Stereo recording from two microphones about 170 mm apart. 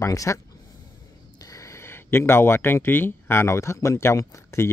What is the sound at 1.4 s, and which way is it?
Speech, 20° left (ahead or behind).